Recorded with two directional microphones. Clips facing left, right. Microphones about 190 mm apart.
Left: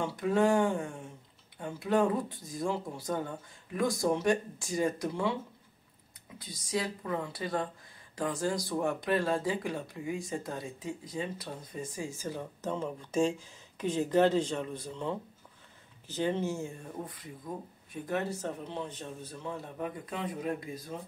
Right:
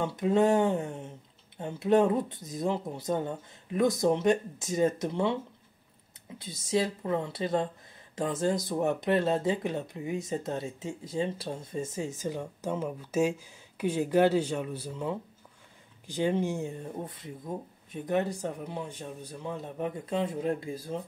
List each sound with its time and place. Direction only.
0.0 s speech: 20° right (ahead or behind)